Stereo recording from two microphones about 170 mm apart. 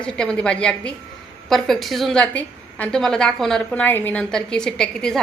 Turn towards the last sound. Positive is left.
turn(degrees=5)  # may be behind; listen again after turning